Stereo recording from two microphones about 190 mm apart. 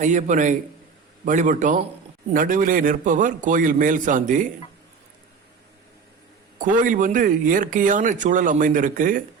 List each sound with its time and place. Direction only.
0.0 s a man's voice: 40° right (ahead or behind)
6.6 s speech: 45° right (ahead or behind)